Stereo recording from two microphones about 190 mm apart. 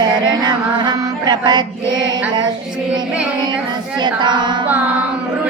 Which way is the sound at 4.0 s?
25° right (ahead or behind).